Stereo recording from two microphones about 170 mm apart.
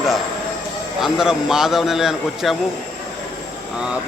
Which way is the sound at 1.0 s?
5° right (ahead or behind).